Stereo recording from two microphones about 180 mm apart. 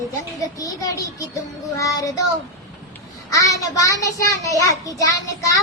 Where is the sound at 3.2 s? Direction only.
20° left (ahead or behind).